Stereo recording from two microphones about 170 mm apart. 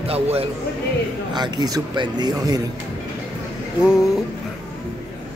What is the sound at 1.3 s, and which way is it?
Speech, 25° right (ahead or behind).